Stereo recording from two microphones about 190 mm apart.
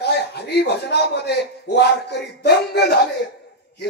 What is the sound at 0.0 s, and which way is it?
Speech, 60° left (ahead or behind).